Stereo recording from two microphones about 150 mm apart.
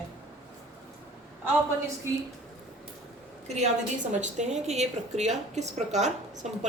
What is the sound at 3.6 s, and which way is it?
A woman's voice, 55° right (ahead or behind).